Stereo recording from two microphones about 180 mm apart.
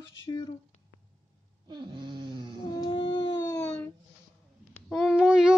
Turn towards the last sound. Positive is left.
turn(degrees=-5)  # may be behind; listen again after turning